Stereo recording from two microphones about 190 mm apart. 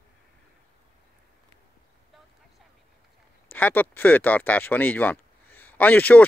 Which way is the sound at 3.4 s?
10° left (ahead or behind).